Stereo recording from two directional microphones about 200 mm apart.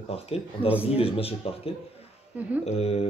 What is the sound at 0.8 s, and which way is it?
Speech, 30° left (ahead or behind).